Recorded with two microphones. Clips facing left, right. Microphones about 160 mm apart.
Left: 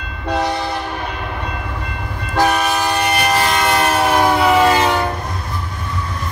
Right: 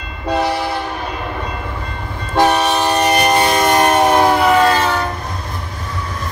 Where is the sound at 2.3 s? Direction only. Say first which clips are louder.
Right 2 dB; 25° right (ahead or behind).